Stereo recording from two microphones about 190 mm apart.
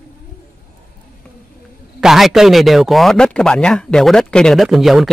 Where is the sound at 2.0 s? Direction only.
Centre (ahead or behind).